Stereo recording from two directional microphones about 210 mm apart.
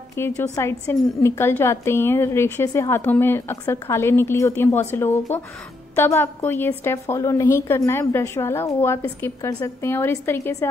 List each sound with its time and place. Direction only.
0.1 s a woman's voice: 10° left (ahead or behind)